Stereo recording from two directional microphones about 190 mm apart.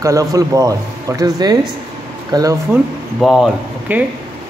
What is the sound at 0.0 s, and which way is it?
A man's voice, 15° right (ahead or behind).